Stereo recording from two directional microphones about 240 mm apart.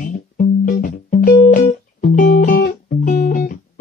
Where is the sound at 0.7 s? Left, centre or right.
Left.